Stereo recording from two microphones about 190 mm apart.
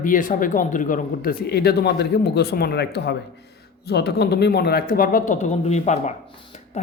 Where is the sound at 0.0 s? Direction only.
45° left (ahead or behind).